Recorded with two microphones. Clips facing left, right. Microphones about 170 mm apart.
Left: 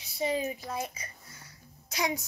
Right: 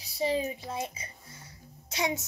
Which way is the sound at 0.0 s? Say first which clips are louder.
Right 1 dB; 30° right (ahead or behind).